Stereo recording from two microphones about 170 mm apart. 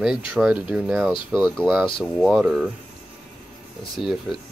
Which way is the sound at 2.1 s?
Centre (ahead or behind).